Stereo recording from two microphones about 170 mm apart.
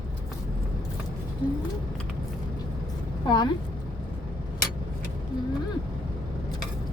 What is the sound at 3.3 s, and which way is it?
Speech, 25° left (ahead or behind).